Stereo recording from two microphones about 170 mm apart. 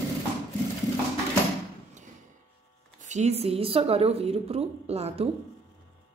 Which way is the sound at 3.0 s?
45° right (ahead or behind).